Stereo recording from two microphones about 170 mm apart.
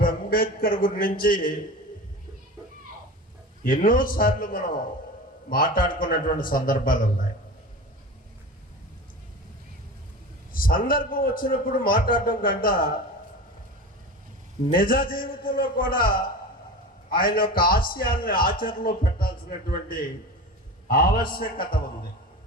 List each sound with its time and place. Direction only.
0.0 s a sound: 55° left (ahead or behind)
3.6 s a man's voice: 55° left (ahead or behind)
10.5 s a man's voice: 55° left (ahead or behind)
14.7 s a man's voice: 55° left (ahead or behind)